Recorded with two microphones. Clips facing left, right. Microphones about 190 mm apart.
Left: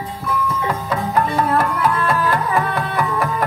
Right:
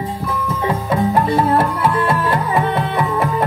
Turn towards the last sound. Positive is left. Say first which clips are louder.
# right 2 dB
turn(degrees=-25)  # may be behind; listen again after turning